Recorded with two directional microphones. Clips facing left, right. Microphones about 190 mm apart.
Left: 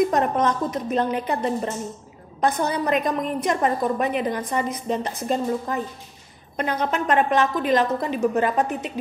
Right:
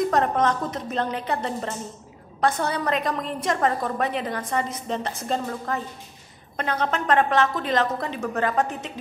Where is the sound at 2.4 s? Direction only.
20° left (ahead or behind).